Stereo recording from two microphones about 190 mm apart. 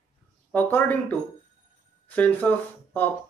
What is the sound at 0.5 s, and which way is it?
Speech, 10° left (ahead or behind).